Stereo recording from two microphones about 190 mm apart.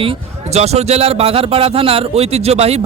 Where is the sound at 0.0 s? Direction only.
30° right (ahead or behind).